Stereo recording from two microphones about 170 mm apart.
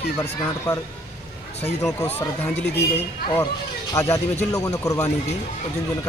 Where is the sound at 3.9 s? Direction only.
15° left (ahead or behind).